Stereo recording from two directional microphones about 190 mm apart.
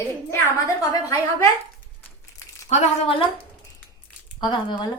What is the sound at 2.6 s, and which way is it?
Speech, 35° left (ahead or behind).